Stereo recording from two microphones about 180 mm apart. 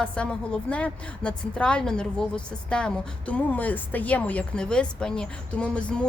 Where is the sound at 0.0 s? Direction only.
5° left (ahead or behind).